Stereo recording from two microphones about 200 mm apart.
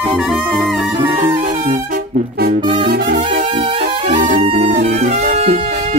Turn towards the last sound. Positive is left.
turn(degrees=-35)  # may be behind; listen again after turning